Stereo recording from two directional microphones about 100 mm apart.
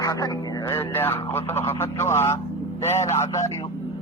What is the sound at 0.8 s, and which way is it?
Speech, 20° left (ahead or behind).